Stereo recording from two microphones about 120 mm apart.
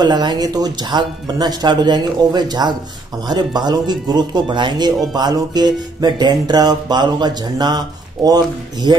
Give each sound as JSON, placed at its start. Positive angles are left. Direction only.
{"t": 0.0, "sound": "music", "side_deg": -35}